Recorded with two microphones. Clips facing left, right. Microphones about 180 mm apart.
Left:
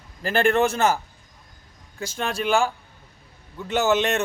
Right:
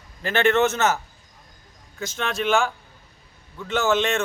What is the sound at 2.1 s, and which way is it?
Speech, 35° left (ahead or behind).